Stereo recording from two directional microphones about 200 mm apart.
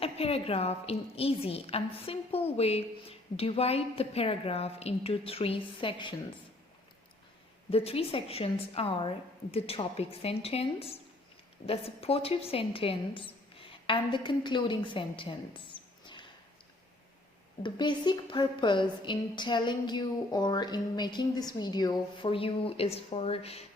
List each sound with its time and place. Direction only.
0.0 s a woman's voice: 30° left (ahead or behind)
7.7 s a woman's voice: 30° left (ahead or behind)
16.0 s a sound: 25° left (ahead or behind)
17.6 s a woman's voice: 25° left (ahead or behind)